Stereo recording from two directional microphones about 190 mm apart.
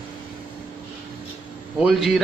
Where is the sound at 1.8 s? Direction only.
Centre (ahead or behind).